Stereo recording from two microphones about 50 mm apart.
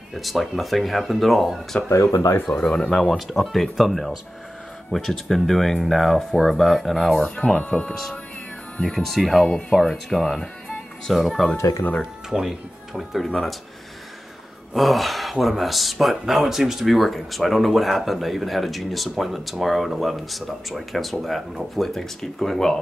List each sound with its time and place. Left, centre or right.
0.1 s speech: centre
2.4 s speech: centre
3.1 s speech: centre
7.2 s speech: centre
14.7 s speech: centre